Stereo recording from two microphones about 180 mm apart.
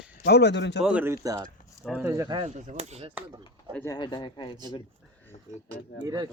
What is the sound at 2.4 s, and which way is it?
Speech, 40° right (ahead or behind).